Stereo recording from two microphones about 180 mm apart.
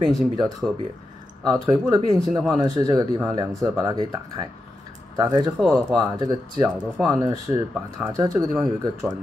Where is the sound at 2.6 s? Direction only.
20° right (ahead or behind).